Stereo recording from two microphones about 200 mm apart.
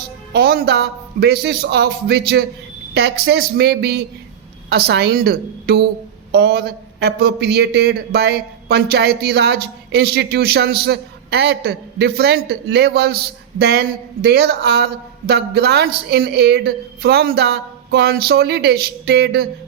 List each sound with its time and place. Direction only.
0.3 s a man's voice: 50° right (ahead or behind)